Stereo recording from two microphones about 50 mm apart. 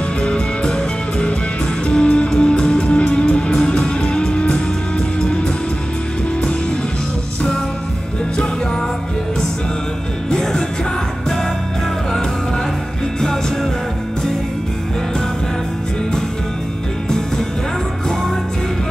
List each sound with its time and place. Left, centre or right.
0.2 s music: centre
10.3 s music: centre